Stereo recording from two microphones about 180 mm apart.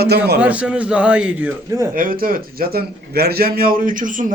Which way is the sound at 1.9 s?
50° right (ahead or behind).